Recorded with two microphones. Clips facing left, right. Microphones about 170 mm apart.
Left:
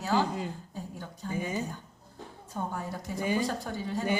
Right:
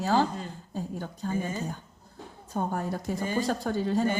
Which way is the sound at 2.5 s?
65° right (ahead or behind).